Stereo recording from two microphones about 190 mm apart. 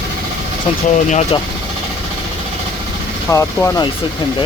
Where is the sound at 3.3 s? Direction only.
15° left (ahead or behind).